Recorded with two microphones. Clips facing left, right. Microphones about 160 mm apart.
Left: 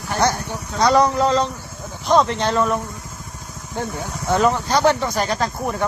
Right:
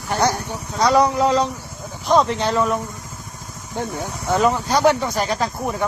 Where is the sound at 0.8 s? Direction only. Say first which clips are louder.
Even; 5° right (ahead or behind).